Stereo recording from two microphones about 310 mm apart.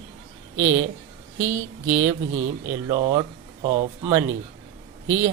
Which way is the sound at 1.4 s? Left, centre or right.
Right.